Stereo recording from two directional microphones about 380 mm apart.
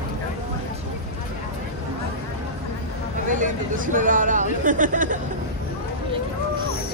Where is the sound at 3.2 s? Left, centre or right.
Right.